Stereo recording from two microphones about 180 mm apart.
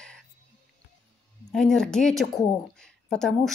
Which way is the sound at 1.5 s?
5° left (ahead or behind).